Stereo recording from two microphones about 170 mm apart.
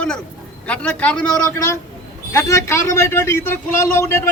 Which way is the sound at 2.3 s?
15° left (ahead or behind).